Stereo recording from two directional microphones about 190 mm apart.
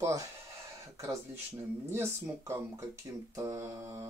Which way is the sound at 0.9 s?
15° right (ahead or behind).